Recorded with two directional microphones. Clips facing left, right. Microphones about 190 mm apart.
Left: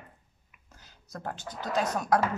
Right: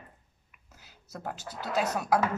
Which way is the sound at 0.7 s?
5° right (ahead or behind).